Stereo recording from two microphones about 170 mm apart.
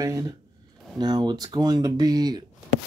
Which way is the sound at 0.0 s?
20° right (ahead or behind).